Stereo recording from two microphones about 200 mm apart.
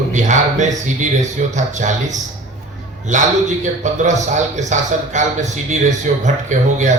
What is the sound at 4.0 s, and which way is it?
A man's voice, 35° right (ahead or behind).